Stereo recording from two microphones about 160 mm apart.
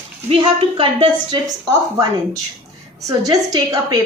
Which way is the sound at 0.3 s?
35° right (ahead or behind).